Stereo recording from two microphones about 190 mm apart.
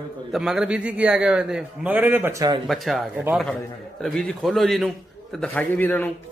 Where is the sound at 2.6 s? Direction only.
Centre (ahead or behind).